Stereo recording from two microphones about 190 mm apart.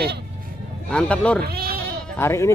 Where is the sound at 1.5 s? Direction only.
55° right (ahead or behind).